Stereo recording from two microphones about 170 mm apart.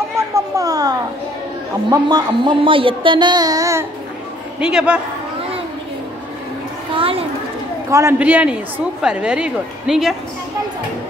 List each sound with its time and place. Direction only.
0.3 s children playing: 20° right (ahead or behind)
1.9 s speech: 25° right (ahead or behind)
4.6 s a woman's voice: 5° right (ahead or behind)
7.0 s children playing: 35° right (ahead or behind)
7.9 s a man's voice: 15° right (ahead or behind)